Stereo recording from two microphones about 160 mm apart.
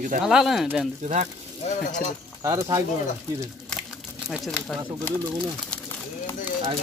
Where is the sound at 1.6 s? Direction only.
50° left (ahead or behind).